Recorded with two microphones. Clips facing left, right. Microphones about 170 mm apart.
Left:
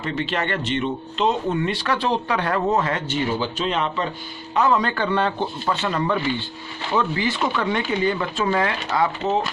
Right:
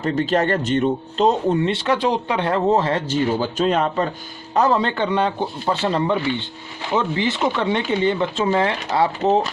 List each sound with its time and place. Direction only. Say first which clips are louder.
0.0 s speech: right 6 dB; 40° right (ahead or behind)
4.8 s a man's voice: right 2 dB; 25° right (ahead or behind)
5.6 s speech: right 4 dB; 30° right (ahead or behind)